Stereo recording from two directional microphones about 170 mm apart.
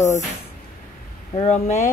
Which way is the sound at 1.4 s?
45° left (ahead or behind).